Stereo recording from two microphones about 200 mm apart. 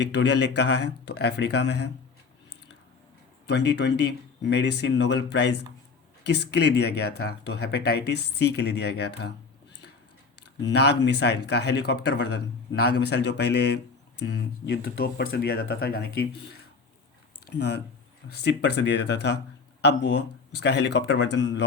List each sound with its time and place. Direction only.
0.0 s speech: 60° left (ahead or behind)
3.4 s speech: 60° left (ahead or behind)
10.6 s speech: 55° left (ahead or behind)